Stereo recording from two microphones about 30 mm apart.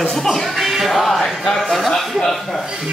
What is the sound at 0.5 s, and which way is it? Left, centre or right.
Speech, centre.